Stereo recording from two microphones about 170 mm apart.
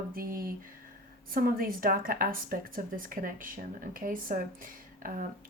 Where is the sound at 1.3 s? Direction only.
60° right (ahead or behind).